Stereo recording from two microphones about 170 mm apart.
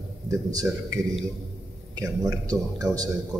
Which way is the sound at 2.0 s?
20° right (ahead or behind).